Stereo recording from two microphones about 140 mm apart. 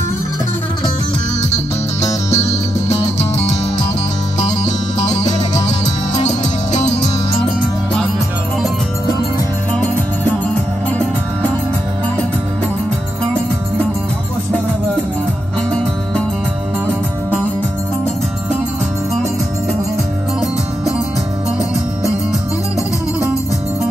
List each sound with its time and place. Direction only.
2.0 s music: 50° left (ahead or behind)
5.0 s music: 55° left (ahead or behind)
9.8 s music: 10° left (ahead or behind)